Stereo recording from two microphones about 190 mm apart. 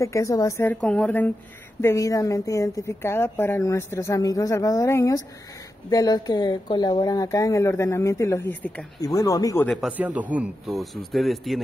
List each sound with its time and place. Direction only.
0.0 s speech: 15° left (ahead or behind)
9.7 s speech: 5° right (ahead or behind)